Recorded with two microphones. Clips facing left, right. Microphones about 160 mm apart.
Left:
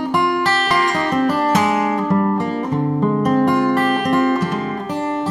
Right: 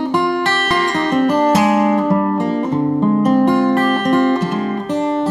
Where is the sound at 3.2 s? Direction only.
25° right (ahead or behind).